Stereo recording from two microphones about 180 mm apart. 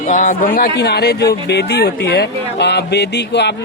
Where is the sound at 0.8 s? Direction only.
65° left (ahead or behind).